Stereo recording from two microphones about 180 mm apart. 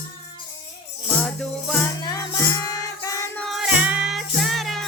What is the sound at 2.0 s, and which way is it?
Music, 20° left (ahead or behind).